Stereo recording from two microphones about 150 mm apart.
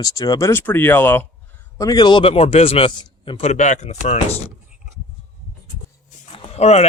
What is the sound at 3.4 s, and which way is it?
Speech, 50° left (ahead or behind).